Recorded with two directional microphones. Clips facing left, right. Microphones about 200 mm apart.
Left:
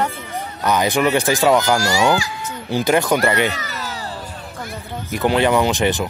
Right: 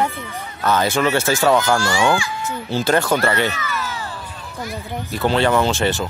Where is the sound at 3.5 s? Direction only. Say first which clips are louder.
Right 2 dB; 35° left (ahead or behind).